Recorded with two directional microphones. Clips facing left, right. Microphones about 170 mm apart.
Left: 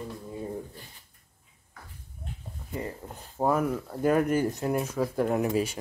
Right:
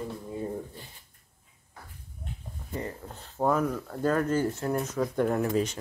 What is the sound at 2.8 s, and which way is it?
Speech, 10° left (ahead or behind).